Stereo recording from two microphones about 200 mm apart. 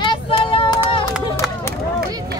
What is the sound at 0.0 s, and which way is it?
Child singing, 25° left (ahead or behind).